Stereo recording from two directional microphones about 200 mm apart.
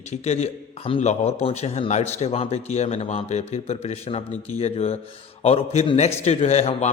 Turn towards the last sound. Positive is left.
turn(degrees=30)  # may be behind; listen again after turning